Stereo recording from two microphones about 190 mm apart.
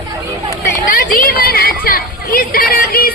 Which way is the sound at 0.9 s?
45° left (ahead or behind).